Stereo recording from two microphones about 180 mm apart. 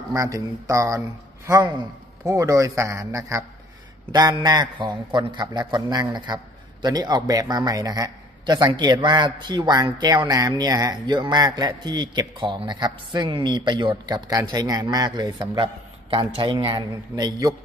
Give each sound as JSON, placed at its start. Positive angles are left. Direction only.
{"t": 0.1, "sound": "a man's voice", "side_deg": -20}